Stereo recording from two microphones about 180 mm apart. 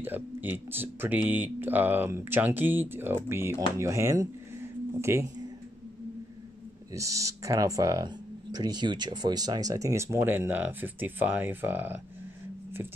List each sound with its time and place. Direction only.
0.0 s speech: 10° right (ahead or behind)
6.9 s speech: 20° right (ahead or behind)